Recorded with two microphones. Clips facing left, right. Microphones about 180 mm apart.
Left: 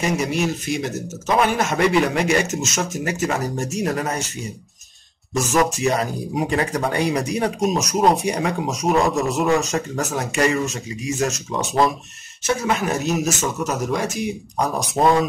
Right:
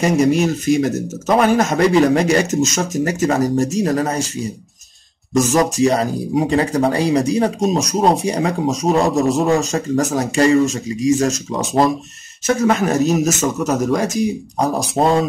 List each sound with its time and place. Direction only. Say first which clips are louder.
0.0 s speech: right 7 dB; 40° right (ahead or behind)
5.3 s speech: right 4 dB; 40° right (ahead or behind)